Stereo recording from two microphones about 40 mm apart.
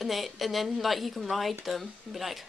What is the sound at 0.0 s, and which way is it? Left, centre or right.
Speech, centre.